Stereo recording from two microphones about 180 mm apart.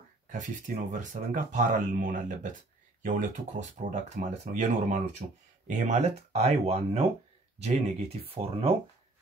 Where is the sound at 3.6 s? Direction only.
40° right (ahead or behind).